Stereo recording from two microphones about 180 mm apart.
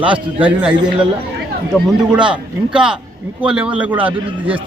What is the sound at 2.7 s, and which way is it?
A man's voice, 5° right (ahead or behind).